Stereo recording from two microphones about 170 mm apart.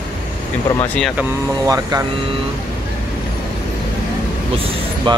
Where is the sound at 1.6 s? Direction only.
20° right (ahead or behind).